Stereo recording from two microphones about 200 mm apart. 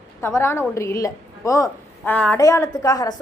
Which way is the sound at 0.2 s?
10° left (ahead or behind).